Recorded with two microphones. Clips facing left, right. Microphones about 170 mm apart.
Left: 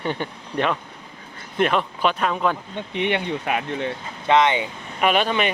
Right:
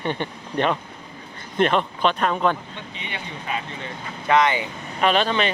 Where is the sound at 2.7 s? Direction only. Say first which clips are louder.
Left 11 dB; 65° left (ahead or behind).